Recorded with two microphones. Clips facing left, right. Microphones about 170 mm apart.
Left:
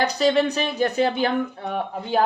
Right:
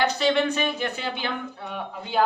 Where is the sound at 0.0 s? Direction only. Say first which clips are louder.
Left 3 dB; 40° left (ahead or behind).